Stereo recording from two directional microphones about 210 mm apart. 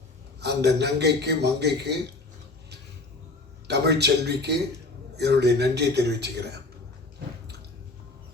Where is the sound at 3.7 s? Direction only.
50° right (ahead or behind).